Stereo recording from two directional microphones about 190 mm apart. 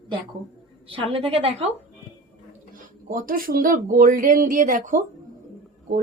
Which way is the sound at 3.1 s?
45° right (ahead or behind).